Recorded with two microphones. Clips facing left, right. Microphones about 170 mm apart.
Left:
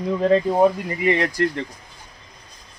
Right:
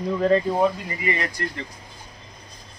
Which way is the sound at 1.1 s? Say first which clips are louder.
Left 7 dB; 70° left (ahead or behind).